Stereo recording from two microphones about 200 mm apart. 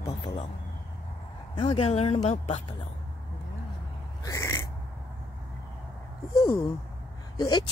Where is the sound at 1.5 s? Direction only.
25° left (ahead or behind).